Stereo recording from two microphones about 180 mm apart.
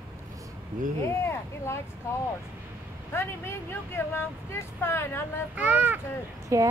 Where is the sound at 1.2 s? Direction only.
15° left (ahead or behind).